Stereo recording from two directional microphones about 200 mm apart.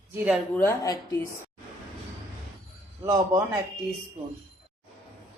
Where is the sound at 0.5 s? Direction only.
10° left (ahead or behind).